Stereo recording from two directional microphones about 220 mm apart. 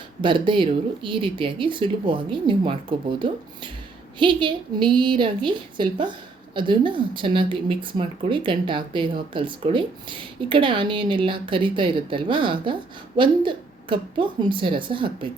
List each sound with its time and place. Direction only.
0.2 s a woman's voice: 20° right (ahead or behind)